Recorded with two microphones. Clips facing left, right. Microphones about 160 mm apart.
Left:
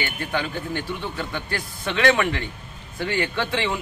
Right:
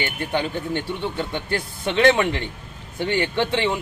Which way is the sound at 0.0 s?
25° right (ahead or behind).